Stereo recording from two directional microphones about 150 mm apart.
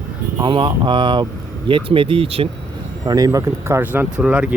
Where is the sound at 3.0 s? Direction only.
25° right (ahead or behind); by 4.5 s 10° right (ahead or behind).